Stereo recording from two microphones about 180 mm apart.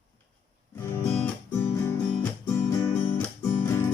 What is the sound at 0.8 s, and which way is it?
Music, 15° left (ahead or behind).